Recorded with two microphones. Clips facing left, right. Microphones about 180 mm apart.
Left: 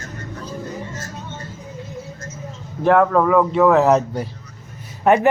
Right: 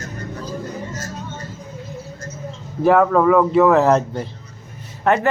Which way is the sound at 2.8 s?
Centre (ahead or behind).